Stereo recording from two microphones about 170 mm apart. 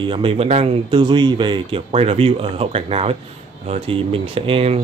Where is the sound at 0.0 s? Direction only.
30° right (ahead or behind).